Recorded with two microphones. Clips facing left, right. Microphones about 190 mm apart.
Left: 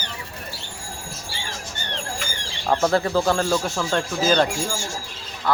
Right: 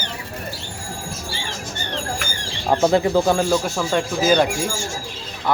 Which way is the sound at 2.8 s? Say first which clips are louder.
Right 4 dB; 15° right (ahead or behind).